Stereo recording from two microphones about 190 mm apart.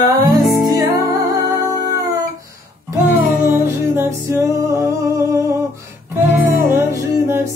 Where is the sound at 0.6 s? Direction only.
20° right (ahead or behind).